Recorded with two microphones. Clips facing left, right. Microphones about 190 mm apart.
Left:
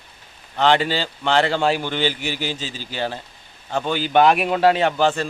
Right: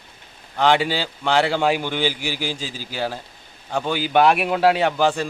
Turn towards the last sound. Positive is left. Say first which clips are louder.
# even
turn(degrees=-10)  # may be behind; listen again after turning